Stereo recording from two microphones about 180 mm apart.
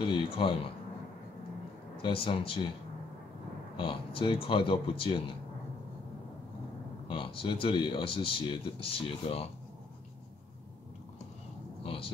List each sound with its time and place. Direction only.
0.0 s speech: 30° left (ahead or behind)
2.0 s speech: 30° left (ahead or behind)
3.7 s speech: 30° left (ahead or behind)
7.1 s speech: 30° left (ahead or behind)
11.8 s speech: 30° left (ahead or behind)